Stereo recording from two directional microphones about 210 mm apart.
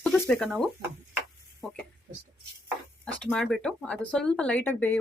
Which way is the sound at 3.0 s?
5° left (ahead or behind).